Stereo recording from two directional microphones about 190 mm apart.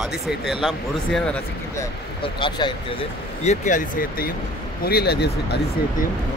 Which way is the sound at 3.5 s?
45° left (ahead or behind).